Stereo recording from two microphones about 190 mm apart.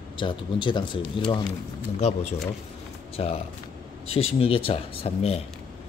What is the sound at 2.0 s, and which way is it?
Speech, 35° left (ahead or behind).